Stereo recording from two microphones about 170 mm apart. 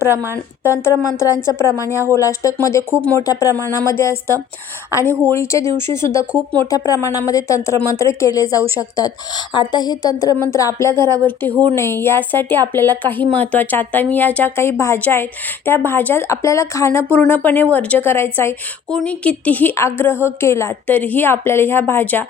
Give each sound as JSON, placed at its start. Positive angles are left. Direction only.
{"t": 0.1, "sound": "a woman's voice", "side_deg": -15}
{"t": 1.4, "sound": "a woman's voice", "side_deg": 15}
{"t": 11.0, "sound": "speech", "side_deg": -25}
{"t": 11.7, "sound": "a woman's voice", "side_deg": 15}